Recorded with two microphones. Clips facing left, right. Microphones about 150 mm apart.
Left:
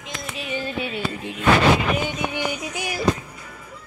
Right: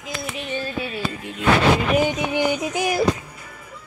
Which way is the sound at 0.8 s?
20° left (ahead or behind).